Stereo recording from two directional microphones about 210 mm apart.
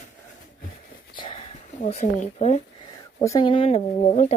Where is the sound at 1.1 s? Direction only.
25° left (ahead or behind).